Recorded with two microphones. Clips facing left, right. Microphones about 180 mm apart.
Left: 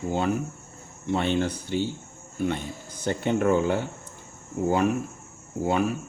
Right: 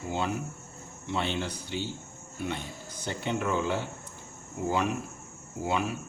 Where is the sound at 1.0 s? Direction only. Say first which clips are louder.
Left 7 dB; 50° left (ahead or behind).